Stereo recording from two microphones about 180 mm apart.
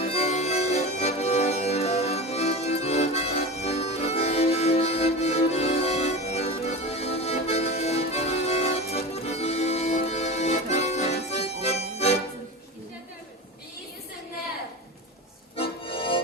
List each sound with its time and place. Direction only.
0.0 s accordion: 35° left (ahead or behind)
15.9 s music: 30° left (ahead or behind)